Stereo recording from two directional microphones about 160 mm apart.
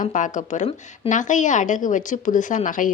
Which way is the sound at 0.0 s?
55° left (ahead or behind).